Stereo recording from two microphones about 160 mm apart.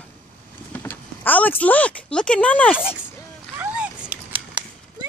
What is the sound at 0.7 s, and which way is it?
Speech, 10° left (ahead or behind).